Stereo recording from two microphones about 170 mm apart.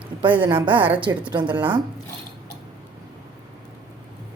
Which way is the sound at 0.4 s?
30° right (ahead or behind).